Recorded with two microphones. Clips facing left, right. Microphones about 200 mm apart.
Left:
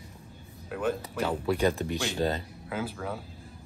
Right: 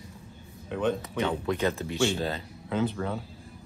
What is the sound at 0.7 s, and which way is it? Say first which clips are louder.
A man's voice: right 2 dB; 5° left (ahead or behind).